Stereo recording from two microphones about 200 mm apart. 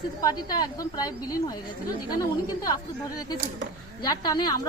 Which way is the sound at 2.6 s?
20° left (ahead or behind).